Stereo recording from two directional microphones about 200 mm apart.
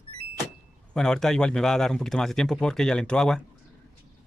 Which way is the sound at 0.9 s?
5° left (ahead or behind).